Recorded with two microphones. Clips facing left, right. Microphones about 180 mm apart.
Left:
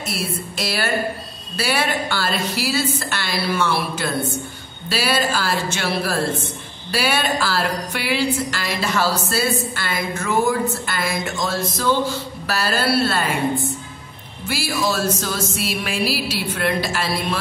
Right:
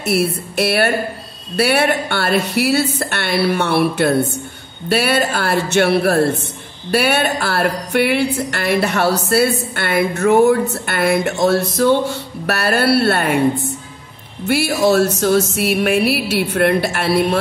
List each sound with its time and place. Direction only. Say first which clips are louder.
0.0 s speech: right 9 dB; 65° right (ahead or behind)